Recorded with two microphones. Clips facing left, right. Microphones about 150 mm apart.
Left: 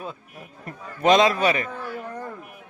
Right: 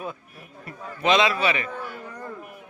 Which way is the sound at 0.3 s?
45° left (ahead or behind).